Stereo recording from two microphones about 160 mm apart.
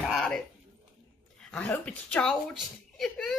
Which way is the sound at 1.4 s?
10° left (ahead or behind).